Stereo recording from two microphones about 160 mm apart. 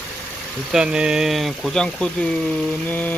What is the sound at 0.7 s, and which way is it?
Speech, 5° right (ahead or behind).